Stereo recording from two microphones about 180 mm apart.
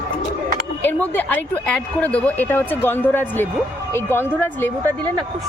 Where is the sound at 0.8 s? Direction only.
10° left (ahead or behind).